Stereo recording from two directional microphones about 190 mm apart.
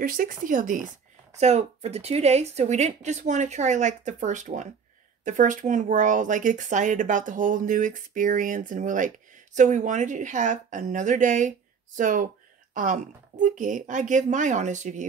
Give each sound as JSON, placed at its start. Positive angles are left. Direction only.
{"t": 0.0, "sound": "speech", "side_deg": -45}